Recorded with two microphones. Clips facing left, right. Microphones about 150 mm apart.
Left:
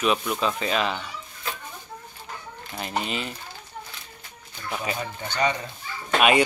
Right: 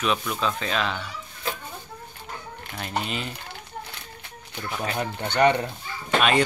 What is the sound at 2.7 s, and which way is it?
Speech, centre (ahead or behind).